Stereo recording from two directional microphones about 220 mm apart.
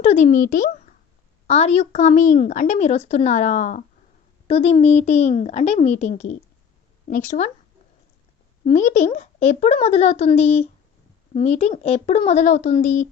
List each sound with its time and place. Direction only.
0.0 s speech: 30° left (ahead or behind)
8.6 s speech: 35° left (ahead or behind)